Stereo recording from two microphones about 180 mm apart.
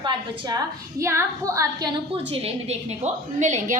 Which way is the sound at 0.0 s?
20° right (ahead or behind).